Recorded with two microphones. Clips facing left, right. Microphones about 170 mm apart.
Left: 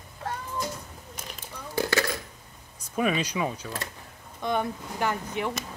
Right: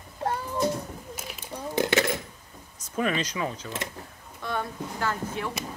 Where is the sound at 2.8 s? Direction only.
10° left (ahead or behind).